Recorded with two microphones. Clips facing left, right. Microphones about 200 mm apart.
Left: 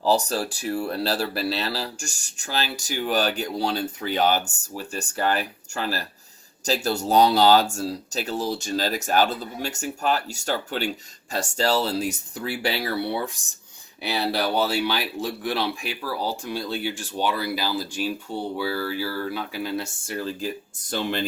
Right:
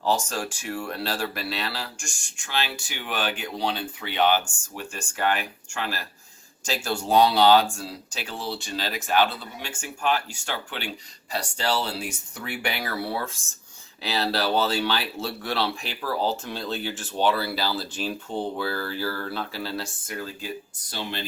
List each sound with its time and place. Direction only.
0.0 s speech: 35° left (ahead or behind)
14.0 s speech: 15° left (ahead or behind); by 20.5 s 35° left (ahead or behind)
20.7 s speech: 50° left (ahead or behind)